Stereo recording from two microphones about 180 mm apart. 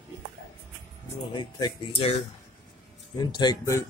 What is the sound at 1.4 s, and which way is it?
Speech, 25° left (ahead or behind).